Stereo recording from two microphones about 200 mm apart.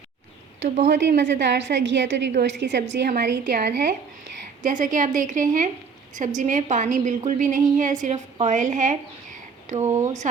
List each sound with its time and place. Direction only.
0.9 s a woman's voice: 60° right (ahead or behind)
4.6 s a woman's voice: 40° right (ahead or behind)
9.7 s speech: 15° right (ahead or behind)